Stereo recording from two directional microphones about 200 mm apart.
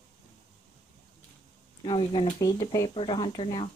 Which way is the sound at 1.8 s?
25° left (ahead or behind).